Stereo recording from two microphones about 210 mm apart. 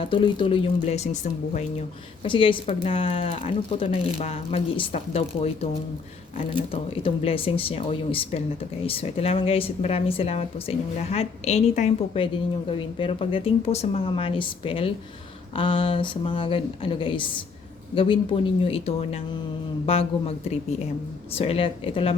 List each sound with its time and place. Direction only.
0.0 s a woman's voice: 25° left (ahead or behind)
6.5 s a woman's voice: 25° left (ahead or behind)